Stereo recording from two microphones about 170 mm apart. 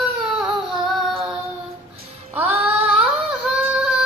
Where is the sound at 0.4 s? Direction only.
Centre (ahead or behind).